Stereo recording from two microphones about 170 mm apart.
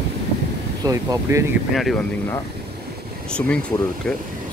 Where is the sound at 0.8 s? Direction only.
20° right (ahead or behind).